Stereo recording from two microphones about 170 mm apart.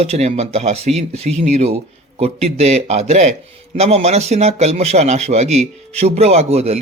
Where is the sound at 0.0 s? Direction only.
40° right (ahead or behind).